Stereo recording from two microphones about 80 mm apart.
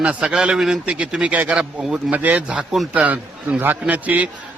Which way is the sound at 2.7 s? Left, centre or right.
Centre.